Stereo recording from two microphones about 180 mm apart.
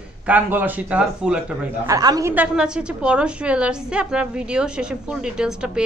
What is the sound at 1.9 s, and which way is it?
A woman's voice, 20° right (ahead or behind).